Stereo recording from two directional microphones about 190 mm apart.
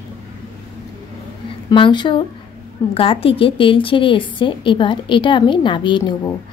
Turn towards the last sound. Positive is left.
turn(degrees=25)  # may be behind; listen again after turning